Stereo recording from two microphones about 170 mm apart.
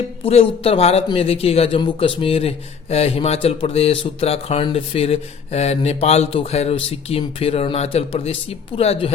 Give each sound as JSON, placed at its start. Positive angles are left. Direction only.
{"t": 0.2, "sound": "speech", "side_deg": 35}